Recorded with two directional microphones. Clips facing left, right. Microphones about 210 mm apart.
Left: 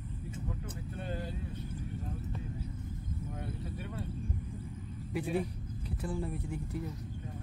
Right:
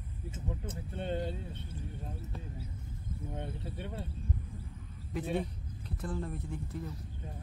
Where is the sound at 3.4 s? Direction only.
25° right (ahead or behind).